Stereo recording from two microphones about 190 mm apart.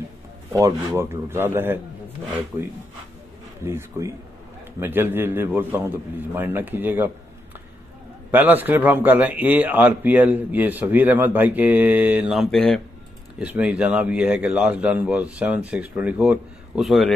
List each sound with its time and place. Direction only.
0.5 s a man's voice: 15° right (ahead or behind)
3.6 s a man's voice: 15° right (ahead or behind)
8.3 s a man's voice: 10° right (ahead or behind)